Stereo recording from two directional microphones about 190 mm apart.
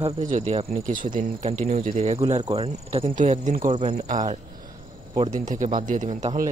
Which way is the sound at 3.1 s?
40° right (ahead or behind).